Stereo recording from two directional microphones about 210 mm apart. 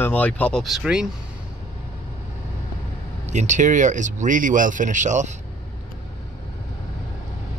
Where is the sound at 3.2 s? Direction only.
35° right (ahead or behind).